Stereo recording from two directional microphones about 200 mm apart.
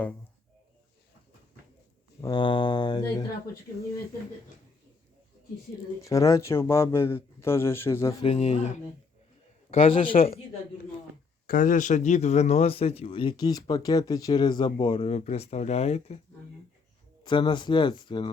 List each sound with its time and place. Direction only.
2.2 s speech: 25° left (ahead or behind)
6.0 s a man's voice: 15° left (ahead or behind)
8.2 s speech: 30° left (ahead or behind)
11.4 s speech: 45° left (ahead or behind)
17.2 s speech: 25° left (ahead or behind)